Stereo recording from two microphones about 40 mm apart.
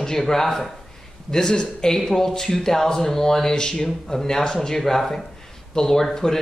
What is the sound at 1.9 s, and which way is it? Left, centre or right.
Speech, centre.